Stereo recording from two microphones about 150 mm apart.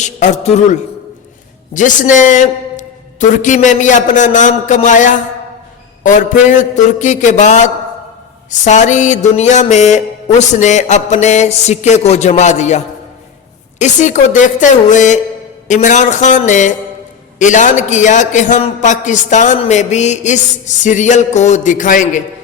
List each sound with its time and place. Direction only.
0.0 s a man's voice: 50° left (ahead or behind)
8.4 s music: 55° left (ahead or behind)
13.7 s a man's voice: 50° left (ahead or behind)
19.5 s music: 50° left (ahead or behind)